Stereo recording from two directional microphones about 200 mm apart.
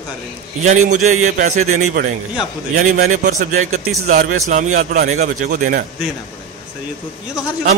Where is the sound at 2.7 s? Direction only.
35° right (ahead or behind).